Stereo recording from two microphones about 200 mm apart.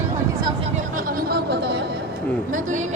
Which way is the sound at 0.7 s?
45° right (ahead or behind).